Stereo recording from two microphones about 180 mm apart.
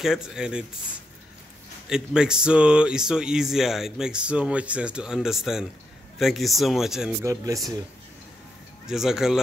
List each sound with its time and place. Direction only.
0.0 s speech: 5° right (ahead or behind)
1.9 s speech: 5° right (ahead or behind)
7.2 s speech: 20° right (ahead or behind)
8.8 s speech: 5° right (ahead or behind)